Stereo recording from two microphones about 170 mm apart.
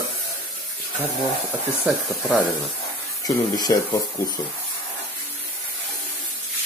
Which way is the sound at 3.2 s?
20° left (ahead or behind).